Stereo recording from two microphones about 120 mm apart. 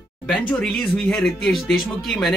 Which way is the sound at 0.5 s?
5° left (ahead or behind).